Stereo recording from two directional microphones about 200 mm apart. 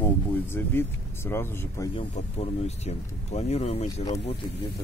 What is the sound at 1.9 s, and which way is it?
Speech, 30° left (ahead or behind).